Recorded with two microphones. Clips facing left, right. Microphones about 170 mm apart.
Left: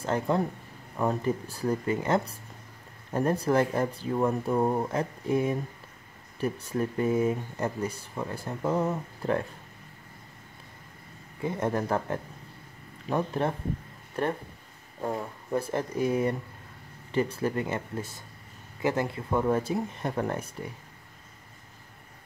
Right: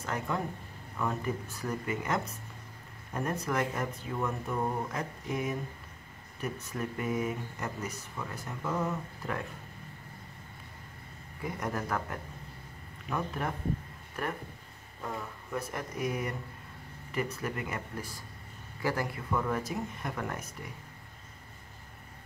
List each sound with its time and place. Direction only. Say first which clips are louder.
0.0 s speech: left 7 dB; 30° left (ahead or behind)
11.4 s speech: left 7 dB; 30° left (ahead or behind)